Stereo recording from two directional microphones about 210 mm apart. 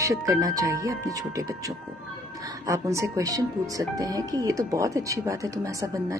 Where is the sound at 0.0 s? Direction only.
15° right (ahead or behind).